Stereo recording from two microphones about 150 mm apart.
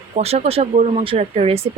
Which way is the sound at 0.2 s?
45° right (ahead or behind).